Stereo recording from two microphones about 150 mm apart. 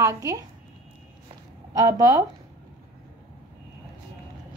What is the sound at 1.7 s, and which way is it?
Speech, 25° right (ahead or behind).